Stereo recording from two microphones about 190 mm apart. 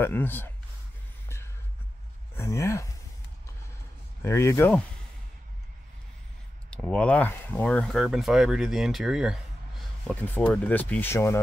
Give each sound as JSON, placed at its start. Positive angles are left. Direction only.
{"t": 0.0, "sound": "speech", "side_deg": 10}
{"t": 2.3, "sound": "speech", "side_deg": 15}
{"t": 4.2, "sound": "speech", "side_deg": 15}
{"t": 6.7, "sound": "speech", "side_deg": 5}